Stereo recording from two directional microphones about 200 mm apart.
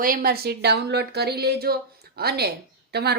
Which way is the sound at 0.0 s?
45° right (ahead or behind).